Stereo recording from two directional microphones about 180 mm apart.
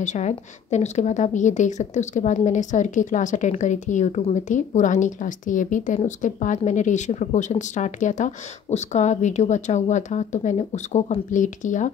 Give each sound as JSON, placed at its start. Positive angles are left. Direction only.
{"t": 0.0, "sound": "a woman's voice", "side_deg": 40}